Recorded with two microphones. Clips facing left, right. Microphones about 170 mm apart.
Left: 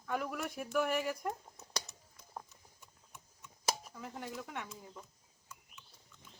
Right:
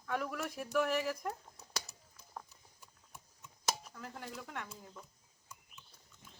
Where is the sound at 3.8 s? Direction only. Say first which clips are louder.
Left 2 dB; 5° left (ahead or behind).